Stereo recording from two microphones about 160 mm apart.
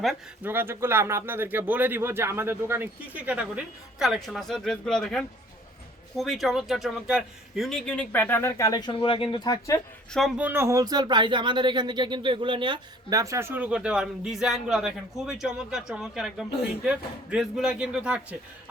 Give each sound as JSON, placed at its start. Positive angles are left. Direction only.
{"t": 0.4, "sound": "a man's voice", "side_deg": -15}
{"t": 8.9, "sound": "speech", "side_deg": 30}
{"t": 10.1, "sound": "speech", "side_deg": 0}